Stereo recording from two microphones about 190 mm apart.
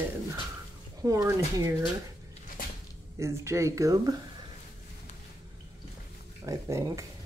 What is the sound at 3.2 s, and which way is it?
Speech, 15° right (ahead or behind).